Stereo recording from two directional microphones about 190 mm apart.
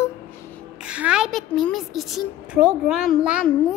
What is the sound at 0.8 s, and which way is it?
A woman's voice, 5° right (ahead or behind).